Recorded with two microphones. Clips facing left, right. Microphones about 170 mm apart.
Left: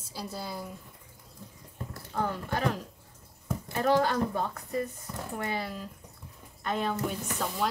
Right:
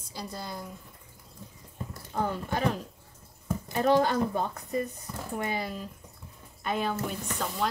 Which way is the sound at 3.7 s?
20° right (ahead or behind).